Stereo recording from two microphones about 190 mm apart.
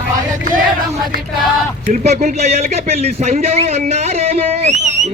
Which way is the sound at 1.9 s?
40° right (ahead or behind).